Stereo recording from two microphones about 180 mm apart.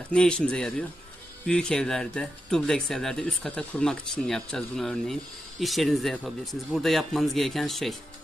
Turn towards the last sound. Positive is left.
turn(degrees=0)  # may be behind; listen again after turning